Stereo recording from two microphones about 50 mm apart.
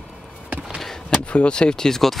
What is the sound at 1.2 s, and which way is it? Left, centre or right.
Speech, left.